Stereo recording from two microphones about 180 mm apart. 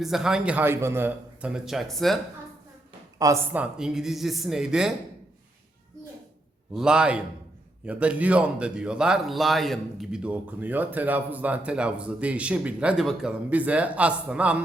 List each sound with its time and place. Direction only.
0.0 s a man's voice: 5° right (ahead or behind)
3.2 s speech: 20° right (ahead or behind)
3.5 s a man's voice: 5° right (ahead or behind)
6.7 s a man's voice: 5° right (ahead or behind)